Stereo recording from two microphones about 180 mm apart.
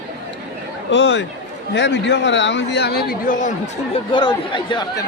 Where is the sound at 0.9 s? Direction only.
80° left; by 3.5 s 45° left (ahead or behind).